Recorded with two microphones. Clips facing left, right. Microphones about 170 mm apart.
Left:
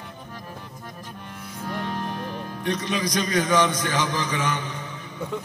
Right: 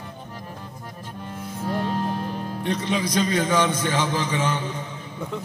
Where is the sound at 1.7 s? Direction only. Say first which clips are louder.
Right 4 dB; 30° right (ahead or behind).